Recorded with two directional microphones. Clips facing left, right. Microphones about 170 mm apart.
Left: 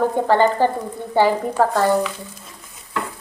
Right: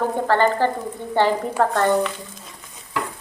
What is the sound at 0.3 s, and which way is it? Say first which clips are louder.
Speech: left 1 dB; 15° left (ahead or behind).